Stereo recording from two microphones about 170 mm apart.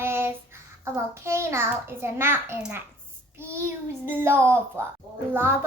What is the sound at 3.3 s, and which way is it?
Child singing, 15° right (ahead or behind).